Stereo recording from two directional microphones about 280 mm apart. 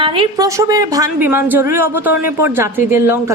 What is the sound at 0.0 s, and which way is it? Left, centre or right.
A woman's voice, centre.